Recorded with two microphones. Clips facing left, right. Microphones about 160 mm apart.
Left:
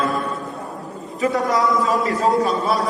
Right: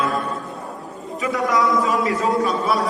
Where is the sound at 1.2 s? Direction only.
35° left (ahead or behind).